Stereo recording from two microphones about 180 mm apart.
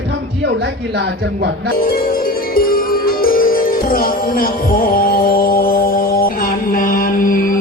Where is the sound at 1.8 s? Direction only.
55° left (ahead or behind).